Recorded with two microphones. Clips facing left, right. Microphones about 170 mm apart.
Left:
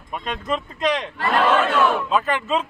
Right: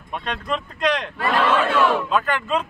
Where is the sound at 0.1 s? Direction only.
5° left (ahead or behind).